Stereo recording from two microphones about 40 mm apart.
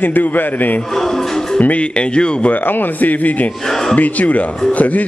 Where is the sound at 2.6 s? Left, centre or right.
Left.